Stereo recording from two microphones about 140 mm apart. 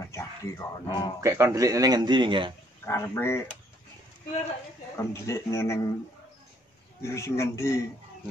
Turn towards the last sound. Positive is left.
turn(degrees=20)  # may be behind; listen again after turning